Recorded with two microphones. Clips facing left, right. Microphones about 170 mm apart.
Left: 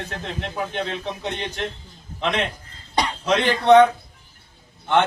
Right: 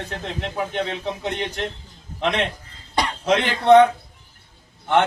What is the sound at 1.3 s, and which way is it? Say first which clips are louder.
Speech: right 3 dB; 10° right (ahead or behind).